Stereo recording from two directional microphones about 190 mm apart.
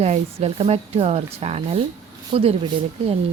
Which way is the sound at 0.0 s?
35° right (ahead or behind).